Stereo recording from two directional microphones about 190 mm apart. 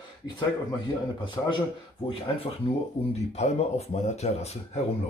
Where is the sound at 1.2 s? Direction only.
25° left (ahead or behind).